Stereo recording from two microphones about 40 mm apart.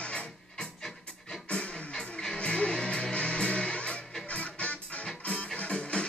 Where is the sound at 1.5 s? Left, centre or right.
Left.